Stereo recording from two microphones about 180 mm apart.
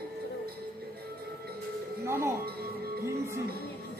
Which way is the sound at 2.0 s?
15° right (ahead or behind).